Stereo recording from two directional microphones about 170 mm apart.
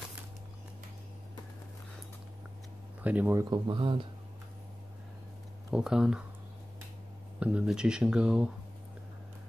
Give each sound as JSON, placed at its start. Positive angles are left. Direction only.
{"t": 3.0, "sound": "speech", "side_deg": -10}
{"t": 3.4, "sound": "speech", "side_deg": -30}
{"t": 5.7, "sound": "speech", "side_deg": -5}
{"t": 7.3, "sound": "speech", "side_deg": -5}